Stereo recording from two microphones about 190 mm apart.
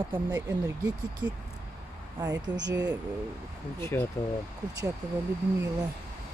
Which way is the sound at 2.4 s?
20° right (ahead or behind).